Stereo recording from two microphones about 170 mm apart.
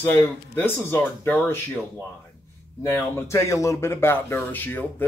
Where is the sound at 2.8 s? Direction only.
15° left (ahead or behind).